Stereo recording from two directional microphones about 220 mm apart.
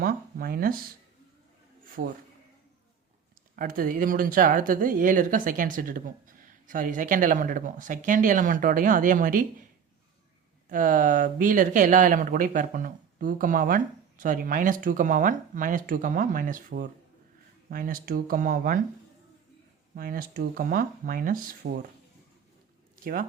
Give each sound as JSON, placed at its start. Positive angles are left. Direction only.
{"t": 0.0, "sound": "speech", "side_deg": -40}
{"t": 2.0, "sound": "speech", "side_deg": -45}
{"t": 3.5, "sound": "speech", "side_deg": -40}
{"t": 10.7, "sound": "speech", "side_deg": -35}
{"t": 20.0, "sound": "speech", "side_deg": -40}